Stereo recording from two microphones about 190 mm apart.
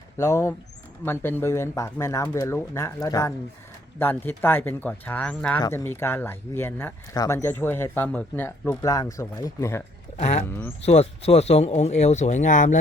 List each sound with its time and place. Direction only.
0.2 s speech: 15° left (ahead or behind)
10.2 s speech: 35° left (ahead or behind)